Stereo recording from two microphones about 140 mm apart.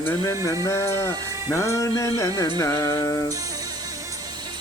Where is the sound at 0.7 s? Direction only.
20° left (ahead or behind).